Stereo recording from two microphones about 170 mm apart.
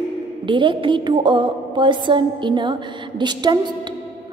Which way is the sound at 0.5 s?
30° right (ahead or behind).